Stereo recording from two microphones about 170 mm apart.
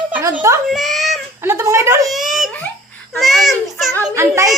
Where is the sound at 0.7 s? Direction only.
Centre (ahead or behind).